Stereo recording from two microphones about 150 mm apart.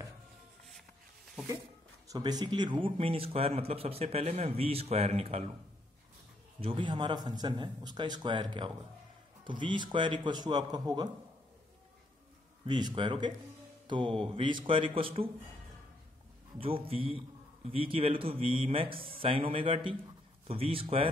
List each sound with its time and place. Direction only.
2.0 s speech: 25° right (ahead or behind); by 5.5 s 45° right (ahead or behind)
6.6 s speech: 35° right (ahead or behind)
12.6 s speech: 30° right (ahead or behind)
16.5 s speech: 40° right (ahead or behind)